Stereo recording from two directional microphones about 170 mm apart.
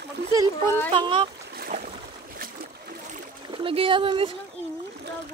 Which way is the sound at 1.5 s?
60° right (ahead or behind).